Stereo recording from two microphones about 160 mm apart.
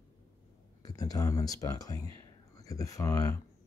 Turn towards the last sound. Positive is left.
turn(degrees=20)  # may be behind; listen again after turning